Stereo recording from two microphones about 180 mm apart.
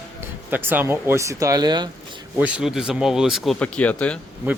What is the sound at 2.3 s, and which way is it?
Speech, 5° right (ahead or behind).